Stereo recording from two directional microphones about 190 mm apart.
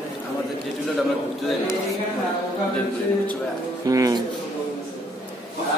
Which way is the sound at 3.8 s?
20° right (ahead or behind).